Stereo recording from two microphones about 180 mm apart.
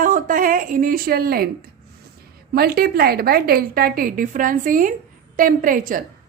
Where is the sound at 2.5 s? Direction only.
60° right (ahead or behind).